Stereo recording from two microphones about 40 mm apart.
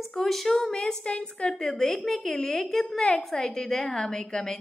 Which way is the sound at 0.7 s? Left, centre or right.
Centre.